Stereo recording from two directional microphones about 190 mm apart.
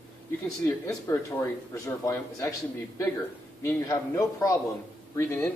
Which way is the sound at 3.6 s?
15° left (ahead or behind).